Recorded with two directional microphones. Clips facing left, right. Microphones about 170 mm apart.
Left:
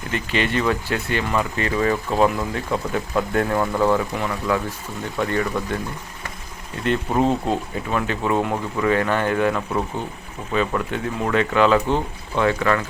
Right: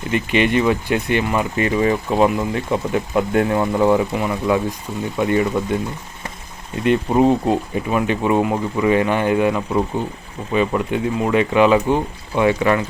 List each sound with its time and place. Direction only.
0.1 s speech: 15° right (ahead or behind)
6.8 s speech: 10° right (ahead or behind)